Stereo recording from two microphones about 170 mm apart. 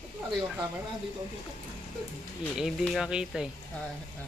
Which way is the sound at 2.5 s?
Centre (ahead or behind).